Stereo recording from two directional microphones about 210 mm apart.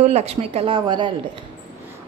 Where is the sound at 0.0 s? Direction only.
30° right (ahead or behind).